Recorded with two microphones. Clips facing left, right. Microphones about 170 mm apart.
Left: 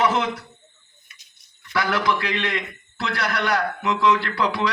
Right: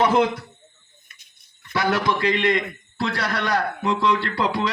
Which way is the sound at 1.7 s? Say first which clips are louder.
Right 1 dB; 25° right (ahead or behind).